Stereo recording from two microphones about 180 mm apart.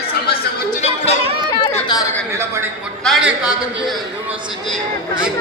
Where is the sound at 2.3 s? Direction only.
15° right (ahead or behind).